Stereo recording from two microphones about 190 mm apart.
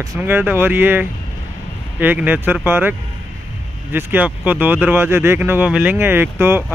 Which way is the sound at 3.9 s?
10° right (ahead or behind).